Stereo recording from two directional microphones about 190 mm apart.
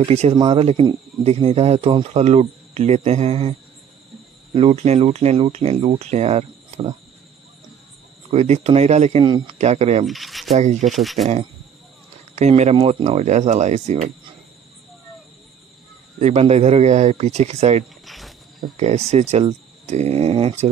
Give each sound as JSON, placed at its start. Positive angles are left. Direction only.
{"t": 0.0, "sound": "speech", "side_deg": -30}
{"t": 4.6, "sound": "speech", "side_deg": -30}
{"t": 8.3, "sound": "speech", "side_deg": -35}
{"t": 9.2, "sound": "speech", "side_deg": -25}
{"t": 9.5, "sound": "speech", "side_deg": -35}
{"t": 10.0, "sound": "speech", "side_deg": 0}
{"t": 10.5, "sound": "speech", "side_deg": -40}
{"t": 10.9, "sound": "speech", "side_deg": 0}
{"t": 12.4, "sound": "speech", "side_deg": -35}
{"t": 16.2, "sound": "speech", "side_deg": -35}
{"t": 18.0, "sound": "cricket", "side_deg": 0}
{"t": 18.8, "sound": "speech", "side_deg": -35}